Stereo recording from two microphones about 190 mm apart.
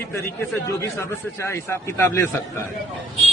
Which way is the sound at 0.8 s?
15° left (ahead or behind).